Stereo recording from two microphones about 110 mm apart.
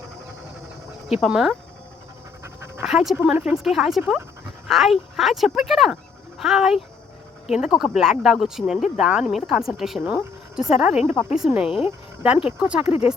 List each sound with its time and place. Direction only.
1.2 s speech: 5° right (ahead or behind)
2.8 s speech: 5° right (ahead or behind)
12.8 s speech: 60° left (ahead or behind)